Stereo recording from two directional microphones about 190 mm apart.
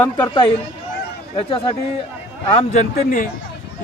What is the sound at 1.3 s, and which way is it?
Speech, 30° left (ahead or behind).